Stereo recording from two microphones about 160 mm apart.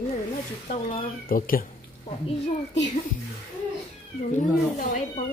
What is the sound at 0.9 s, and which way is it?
Speech, 65° left (ahead or behind).